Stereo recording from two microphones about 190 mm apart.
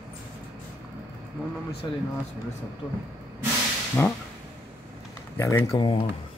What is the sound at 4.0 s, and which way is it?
Speech, 10° left (ahead or behind).